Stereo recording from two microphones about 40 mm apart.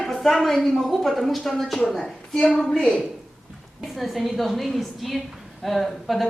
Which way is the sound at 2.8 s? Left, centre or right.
Centre.